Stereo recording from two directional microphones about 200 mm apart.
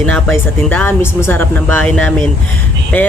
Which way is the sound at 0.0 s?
10° left (ahead or behind).